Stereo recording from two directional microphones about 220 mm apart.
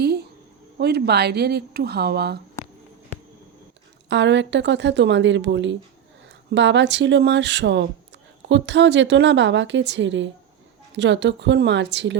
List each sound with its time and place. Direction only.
0.0 s a sound: 50° right (ahead or behind)
0.8 s speech: 50° right (ahead or behind)
4.1 s a woman's voice: 55° right (ahead or behind)